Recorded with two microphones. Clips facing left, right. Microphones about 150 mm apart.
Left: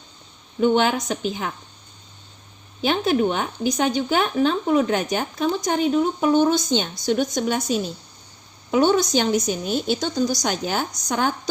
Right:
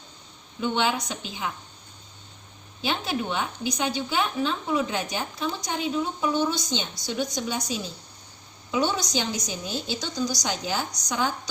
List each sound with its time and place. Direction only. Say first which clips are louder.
0.6 s speech: left 7 dB; 50° left (ahead or behind)
2.8 s a woman's voice: left 8 dB; 50° left (ahead or behind)